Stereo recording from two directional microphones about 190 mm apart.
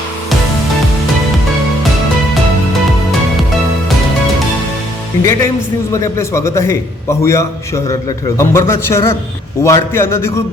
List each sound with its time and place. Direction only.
5.2 s a man's voice: 15° left (ahead or behind)